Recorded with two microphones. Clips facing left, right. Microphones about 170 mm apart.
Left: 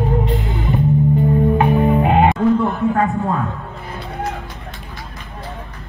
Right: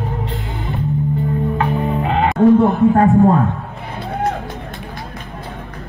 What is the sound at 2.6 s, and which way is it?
Speech, 35° right (ahead or behind).